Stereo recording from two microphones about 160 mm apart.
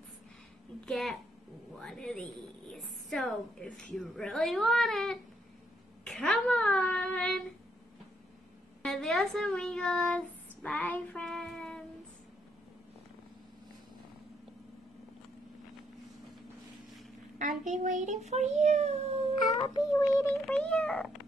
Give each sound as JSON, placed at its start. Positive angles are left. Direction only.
{"t": 0.8, "sound": "a woman's voice", "side_deg": 0}
{"t": 8.8, "sound": "speech", "side_deg": 0}
{"t": 17.4, "sound": "a child's voice", "side_deg": -50}
{"t": 19.5, "sound": "child singing", "side_deg": 20}
{"t": 20.4, "sound": "a child's voice", "side_deg": 5}